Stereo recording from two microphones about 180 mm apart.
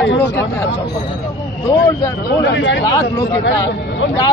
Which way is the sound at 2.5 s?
80° left.